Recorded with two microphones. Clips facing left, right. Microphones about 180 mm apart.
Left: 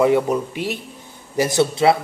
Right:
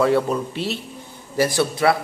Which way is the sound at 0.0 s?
15° left (ahead or behind).